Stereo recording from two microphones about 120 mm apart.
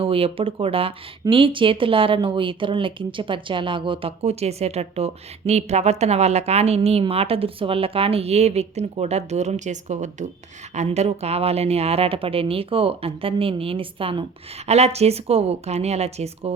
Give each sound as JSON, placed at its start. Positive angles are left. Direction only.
{"t": 0.0, "sound": "a woman's voice", "side_deg": -50}
{"t": 10.8, "sound": "speech", "side_deg": -65}
{"t": 14.7, "sound": "a woman's voice", "side_deg": -65}